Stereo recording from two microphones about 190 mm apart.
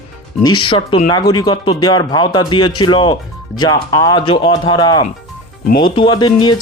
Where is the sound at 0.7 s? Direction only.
30° left (ahead or behind).